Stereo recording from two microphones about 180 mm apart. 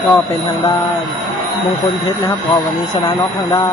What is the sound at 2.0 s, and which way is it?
Speech, 15° left (ahead or behind).